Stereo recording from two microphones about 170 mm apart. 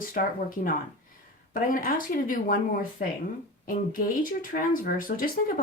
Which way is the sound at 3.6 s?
55° left (ahead or behind).